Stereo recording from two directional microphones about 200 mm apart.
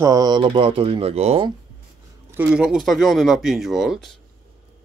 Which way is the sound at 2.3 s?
5° right (ahead or behind).